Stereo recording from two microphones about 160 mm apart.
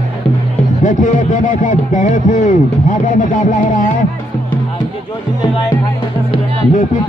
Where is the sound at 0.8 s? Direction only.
50° left (ahead or behind).